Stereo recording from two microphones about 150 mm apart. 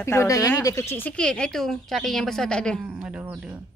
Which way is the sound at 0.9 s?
10° left (ahead or behind).